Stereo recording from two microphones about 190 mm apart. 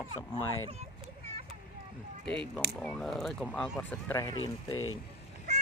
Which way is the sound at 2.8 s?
5° left (ahead or behind).